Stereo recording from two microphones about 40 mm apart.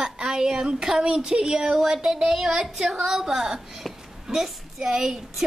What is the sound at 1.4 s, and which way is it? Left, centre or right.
A woman's voice, centre.